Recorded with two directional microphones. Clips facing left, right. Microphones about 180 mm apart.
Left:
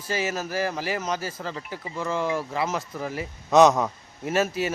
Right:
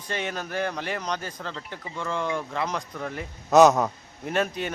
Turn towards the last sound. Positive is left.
turn(degrees=5)  # may be behind; listen again after turning